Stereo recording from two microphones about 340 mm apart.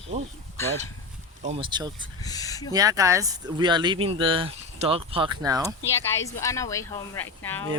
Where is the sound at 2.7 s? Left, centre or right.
Centre.